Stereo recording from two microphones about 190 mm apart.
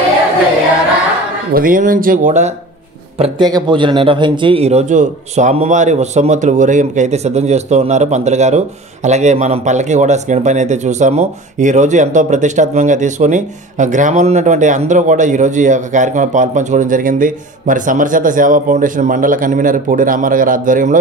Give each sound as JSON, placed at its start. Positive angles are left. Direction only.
{"t": 1.5, "sound": "speech", "side_deg": -45}
{"t": 3.2, "sound": "speech", "side_deg": -20}